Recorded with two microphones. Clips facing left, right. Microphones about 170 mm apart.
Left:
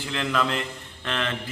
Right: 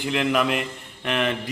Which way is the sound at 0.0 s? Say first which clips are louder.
Right 4 dB; 15° right (ahead or behind).